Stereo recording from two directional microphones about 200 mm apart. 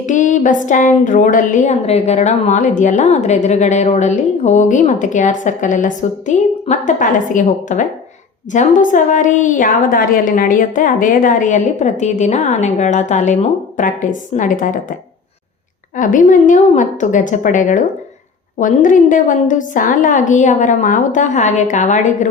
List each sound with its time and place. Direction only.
0.0 s a woman's voice: 40° left (ahead or behind)
16.0 s a woman's voice: 40° left (ahead or behind)